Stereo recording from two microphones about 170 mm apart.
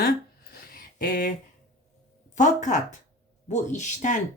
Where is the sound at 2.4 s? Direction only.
45° left (ahead or behind).